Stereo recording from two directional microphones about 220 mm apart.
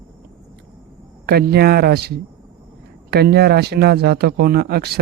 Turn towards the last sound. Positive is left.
turn(degrees=-45)  # may be behind; listen again after turning